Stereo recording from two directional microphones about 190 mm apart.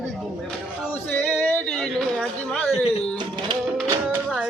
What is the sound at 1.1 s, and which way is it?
Speech, 10° left (ahead or behind).